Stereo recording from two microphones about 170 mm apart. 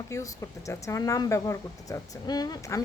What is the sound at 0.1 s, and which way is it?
Speech, 20° left (ahead or behind).